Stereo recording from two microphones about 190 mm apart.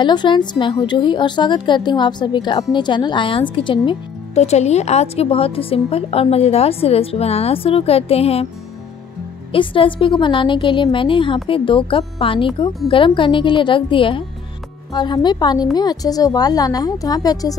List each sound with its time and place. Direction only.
0.0 s a woman's voice: 25° left (ahead or behind)
9.5 s a woman's voice: 25° left (ahead or behind)